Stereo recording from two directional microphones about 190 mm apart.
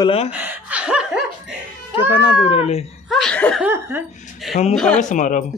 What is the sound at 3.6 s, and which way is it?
Laughter, 10° right (ahead or behind).